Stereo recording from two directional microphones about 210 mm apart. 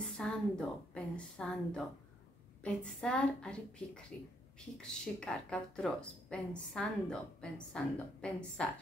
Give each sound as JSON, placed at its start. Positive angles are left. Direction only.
{"t": 0.0, "sound": "a woman's voice", "side_deg": 5}
{"t": 5.0, "sound": "a woman's voice", "side_deg": 5}